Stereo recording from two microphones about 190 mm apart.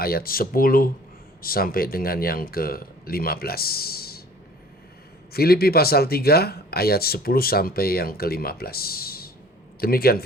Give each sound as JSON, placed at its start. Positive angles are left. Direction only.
{"t": 0.0, "sound": "speech", "side_deg": 50}
{"t": 5.3, "sound": "speech", "side_deg": 55}